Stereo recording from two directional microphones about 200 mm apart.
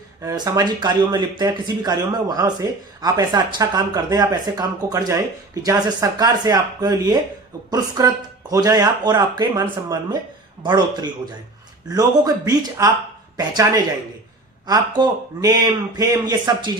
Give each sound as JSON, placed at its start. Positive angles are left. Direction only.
{"t": 0.2, "sound": "speech", "side_deg": -15}
{"t": 14.7, "sound": "speech", "side_deg": -20}